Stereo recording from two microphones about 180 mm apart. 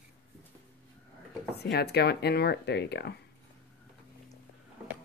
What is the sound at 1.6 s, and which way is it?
Speech, 65° left (ahead or behind).